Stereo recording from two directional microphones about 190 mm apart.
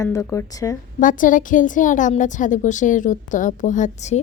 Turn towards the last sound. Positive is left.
turn(degrees=40)  # may be behind; listen again after turning